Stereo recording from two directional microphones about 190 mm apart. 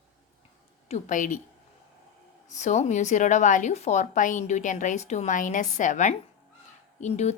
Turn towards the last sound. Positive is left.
turn(degrees=35)  # may be behind; listen again after turning